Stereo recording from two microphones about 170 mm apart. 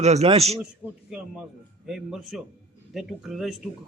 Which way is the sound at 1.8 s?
Centre (ahead or behind).